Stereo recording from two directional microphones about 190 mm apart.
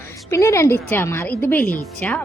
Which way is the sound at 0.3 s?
15° left (ahead or behind).